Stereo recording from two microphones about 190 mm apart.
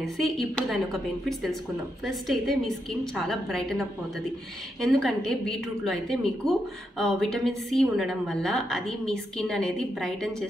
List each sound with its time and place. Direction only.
0.0 s a woman's voice: centre (ahead or behind)